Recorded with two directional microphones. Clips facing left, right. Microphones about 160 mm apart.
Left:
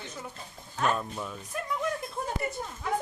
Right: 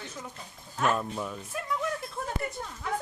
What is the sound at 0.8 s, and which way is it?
Speech, 5° right (ahead or behind).